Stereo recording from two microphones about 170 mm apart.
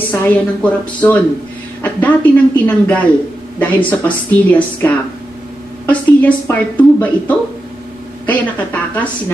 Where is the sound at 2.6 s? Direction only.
10° left (ahead or behind).